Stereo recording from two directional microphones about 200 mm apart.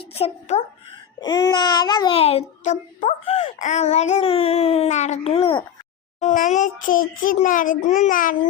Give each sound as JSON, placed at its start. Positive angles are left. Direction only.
{"t": 0.0, "sound": "speech", "side_deg": 30}
{"t": 1.2, "sound": "a child's voice", "side_deg": 20}
{"t": 6.1, "sound": "a child's voice", "side_deg": 40}